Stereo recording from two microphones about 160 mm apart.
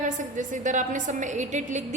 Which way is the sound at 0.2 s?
55° right (ahead or behind).